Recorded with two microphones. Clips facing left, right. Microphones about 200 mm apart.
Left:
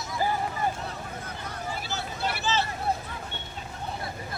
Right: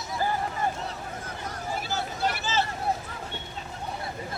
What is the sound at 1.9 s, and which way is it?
Vehicle, 45° right (ahead or behind).